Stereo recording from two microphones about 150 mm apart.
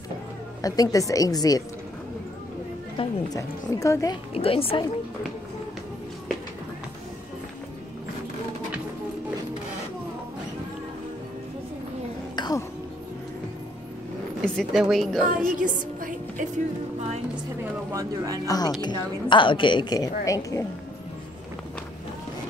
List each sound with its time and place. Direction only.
0.6 s a woman's voice: 25° left (ahead or behind)
3.0 s a woman's voice: 35° left (ahead or behind)
3.3 s a woman's voice: 20° left (ahead or behind)
4.3 s a woman's voice: 40° left (ahead or behind)
12.4 s music: 25° left (ahead or behind)
14.4 s speech: 5° left (ahead or behind)
15.4 s a woman's voice: 60° right (ahead or behind)
16.0 s music: 60° right (ahead or behind)
17.9 s speech: 25° right (ahead or behind)
18.5 s a woman's voice: 25° left (ahead or behind)